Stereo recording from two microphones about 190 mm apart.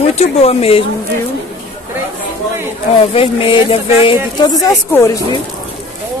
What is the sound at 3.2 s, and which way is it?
Speech, 30° left (ahead or behind).